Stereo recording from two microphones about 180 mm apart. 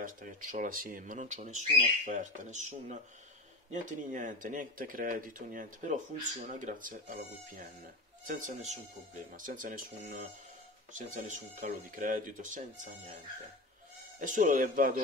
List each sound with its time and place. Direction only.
0.0 s speech: 50° right (ahead or behind)
8.5 s speech: 40° right (ahead or behind)
14.2 s speech: 45° right (ahead or behind)